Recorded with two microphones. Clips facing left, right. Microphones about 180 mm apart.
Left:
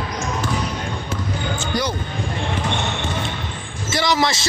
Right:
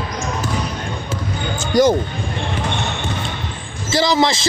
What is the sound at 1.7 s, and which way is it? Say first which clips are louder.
Speech: right 11 dB; 45° right (ahead or behind).